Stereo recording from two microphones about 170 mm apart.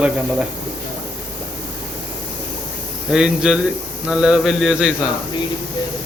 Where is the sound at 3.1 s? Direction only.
5° right (ahead or behind).